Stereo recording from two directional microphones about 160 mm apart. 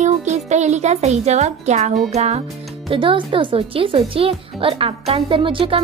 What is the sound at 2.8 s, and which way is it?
Speech, 30° right (ahead or behind).